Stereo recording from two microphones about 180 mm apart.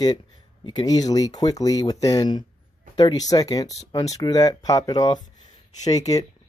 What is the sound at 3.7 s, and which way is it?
Speech, 35° left (ahead or behind).